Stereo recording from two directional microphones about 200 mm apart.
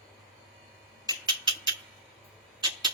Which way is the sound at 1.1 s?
25° right (ahead or behind).